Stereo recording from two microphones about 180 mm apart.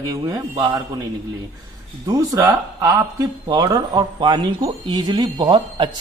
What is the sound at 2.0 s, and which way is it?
Speech, 20° right (ahead or behind).